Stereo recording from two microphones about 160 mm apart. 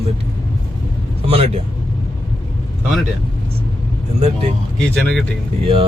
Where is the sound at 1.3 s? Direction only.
35° right (ahead or behind).